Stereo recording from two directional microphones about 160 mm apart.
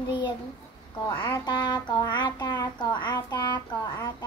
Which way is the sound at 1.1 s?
30° left (ahead or behind).